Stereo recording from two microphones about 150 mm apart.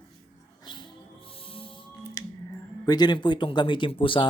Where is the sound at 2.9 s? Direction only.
30° left (ahead or behind).